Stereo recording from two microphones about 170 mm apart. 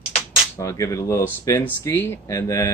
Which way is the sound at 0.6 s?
20° left (ahead or behind).